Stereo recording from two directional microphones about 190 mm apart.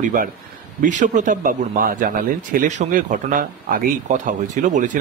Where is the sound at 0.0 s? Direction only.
45° right (ahead or behind).